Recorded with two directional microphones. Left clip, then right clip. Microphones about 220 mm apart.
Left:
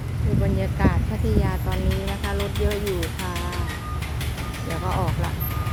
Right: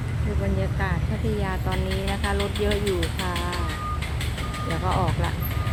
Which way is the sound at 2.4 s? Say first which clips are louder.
Right 1 dB; 40° left (ahead or behind).